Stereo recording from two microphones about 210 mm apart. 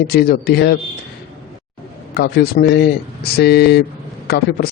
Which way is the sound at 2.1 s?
50° left (ahead or behind).